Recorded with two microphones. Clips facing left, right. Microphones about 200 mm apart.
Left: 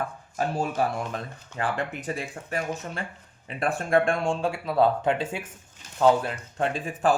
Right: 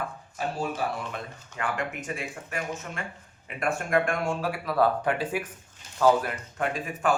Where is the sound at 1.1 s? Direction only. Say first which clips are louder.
Left 3 dB; 35° left (ahead or behind).